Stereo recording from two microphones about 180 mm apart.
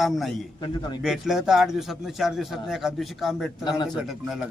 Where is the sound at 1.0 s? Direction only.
Centre (ahead or behind).